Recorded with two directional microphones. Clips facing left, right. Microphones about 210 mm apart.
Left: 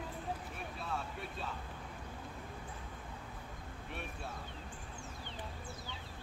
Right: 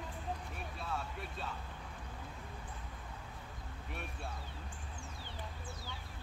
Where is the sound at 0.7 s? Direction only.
Centre (ahead or behind).